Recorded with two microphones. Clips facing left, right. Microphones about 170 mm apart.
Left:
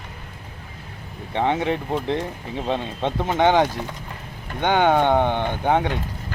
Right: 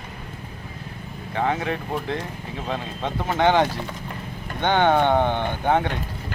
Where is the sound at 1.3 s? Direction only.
25° left (ahead or behind).